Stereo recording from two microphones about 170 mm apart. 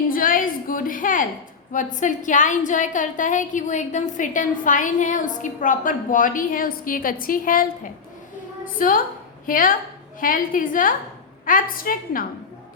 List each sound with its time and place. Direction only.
0.1 s a sound: 55° left (ahead or behind)
1.7 s a woman's voice: 50° left (ahead or behind)
8.8 s a woman's voice: 55° left (ahead or behind)